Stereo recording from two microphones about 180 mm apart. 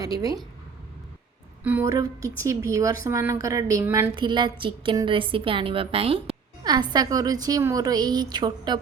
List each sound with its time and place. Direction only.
0.0 s a woman's voice: 20° right (ahead or behind)
1.6 s a woman's voice: 10° right (ahead or behind)
4.1 s a woman's voice: 25° right (ahead or behind)